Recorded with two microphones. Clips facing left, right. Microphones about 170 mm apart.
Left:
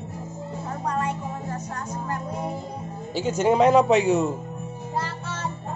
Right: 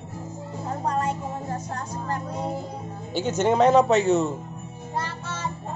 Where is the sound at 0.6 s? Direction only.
30° right (ahead or behind).